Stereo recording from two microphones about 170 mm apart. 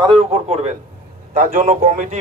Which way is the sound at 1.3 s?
55° right (ahead or behind).